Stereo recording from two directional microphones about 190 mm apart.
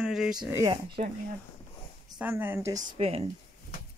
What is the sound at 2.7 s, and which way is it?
Speech, 30° right (ahead or behind).